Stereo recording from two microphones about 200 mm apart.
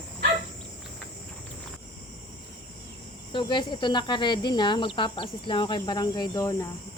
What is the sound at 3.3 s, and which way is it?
Speech, 20° left (ahead or behind).